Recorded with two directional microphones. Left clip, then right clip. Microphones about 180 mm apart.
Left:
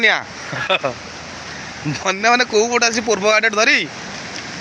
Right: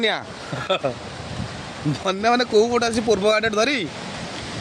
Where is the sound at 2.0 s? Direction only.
15° right (ahead or behind).